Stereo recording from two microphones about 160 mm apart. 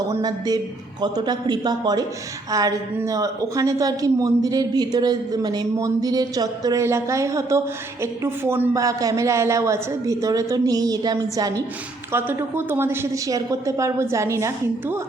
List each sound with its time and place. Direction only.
0.1 s a woman's voice: 25° right (ahead or behind)